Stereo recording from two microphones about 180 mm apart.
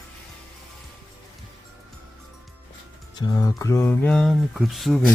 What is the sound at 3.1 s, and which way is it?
Speech, 20° left (ahead or behind).